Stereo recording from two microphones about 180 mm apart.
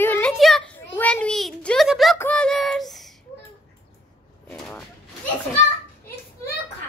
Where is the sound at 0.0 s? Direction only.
10° left (ahead or behind).